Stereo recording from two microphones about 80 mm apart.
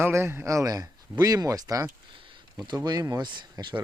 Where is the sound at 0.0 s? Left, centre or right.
Right.